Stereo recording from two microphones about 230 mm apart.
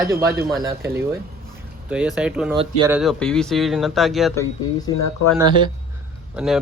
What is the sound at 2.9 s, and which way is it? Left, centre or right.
A man's voice, centre.